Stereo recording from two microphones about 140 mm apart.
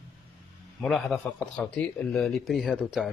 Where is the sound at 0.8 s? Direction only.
Centre (ahead or behind).